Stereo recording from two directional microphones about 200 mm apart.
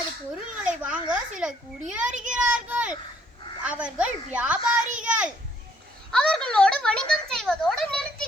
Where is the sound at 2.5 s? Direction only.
5° right (ahead or behind).